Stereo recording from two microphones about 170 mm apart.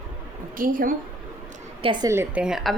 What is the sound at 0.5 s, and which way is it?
Speech, 55° right (ahead or behind).